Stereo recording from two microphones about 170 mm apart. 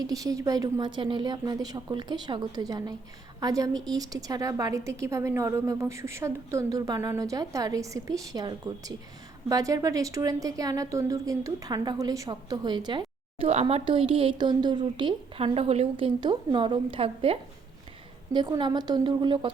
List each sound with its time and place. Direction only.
0.0 s a woman's voice: 20° right (ahead or behind)
18.3 s a woman's voice: 25° right (ahead or behind)